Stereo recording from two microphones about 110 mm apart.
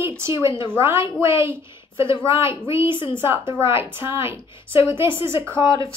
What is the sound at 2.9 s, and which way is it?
Speech, 45° left (ahead or behind).